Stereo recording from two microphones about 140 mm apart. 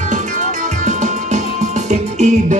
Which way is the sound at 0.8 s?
60° right (ahead or behind).